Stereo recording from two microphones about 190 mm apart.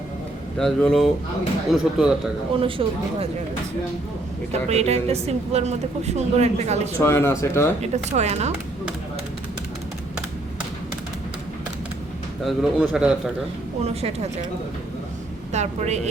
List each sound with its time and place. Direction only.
0.6 s speech: 5° left (ahead or behind)
2.6 s speech: 30° right (ahead or behind)
4.7 s speech: 35° right (ahead or behind)
7.0 s speech: 15° left (ahead or behind)
7.8 s speech: 35° right (ahead or behind)
12.5 s speech: centre (ahead or behind)
13.8 s speech: 35° right (ahead or behind)
15.5 s speech: 35° right (ahead or behind)